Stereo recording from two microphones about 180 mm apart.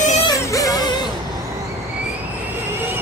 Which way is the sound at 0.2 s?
20° left (ahead or behind).